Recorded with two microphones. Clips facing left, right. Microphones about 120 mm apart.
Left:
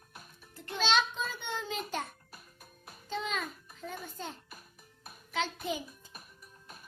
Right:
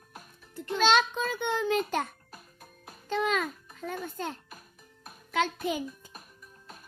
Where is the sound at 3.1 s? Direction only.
70° right (ahead or behind).